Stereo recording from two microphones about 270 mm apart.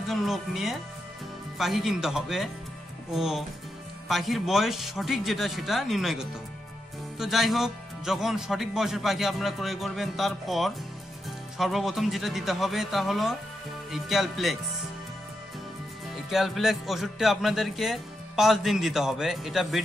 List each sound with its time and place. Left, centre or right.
0.1 s music: centre
16.3 s music: centre